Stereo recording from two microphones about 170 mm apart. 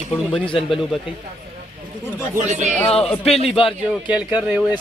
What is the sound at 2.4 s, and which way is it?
Speech, 45° right (ahead or behind).